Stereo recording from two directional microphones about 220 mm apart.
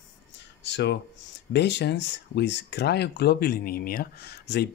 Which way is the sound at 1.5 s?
50° left (ahead or behind).